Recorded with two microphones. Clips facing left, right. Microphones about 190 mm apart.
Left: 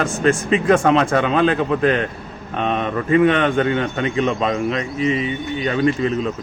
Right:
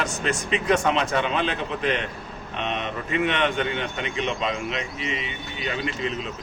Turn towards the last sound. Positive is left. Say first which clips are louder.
# left 10 dB
turn(degrees=45)  # may be behind; listen again after turning